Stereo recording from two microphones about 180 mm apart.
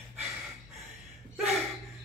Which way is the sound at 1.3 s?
Centre (ahead or behind).